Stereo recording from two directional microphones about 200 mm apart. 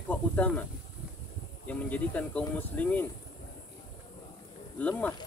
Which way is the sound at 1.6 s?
10° left (ahead or behind).